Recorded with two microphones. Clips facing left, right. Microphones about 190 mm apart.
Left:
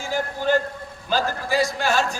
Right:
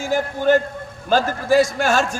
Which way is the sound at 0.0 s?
50° right (ahead or behind).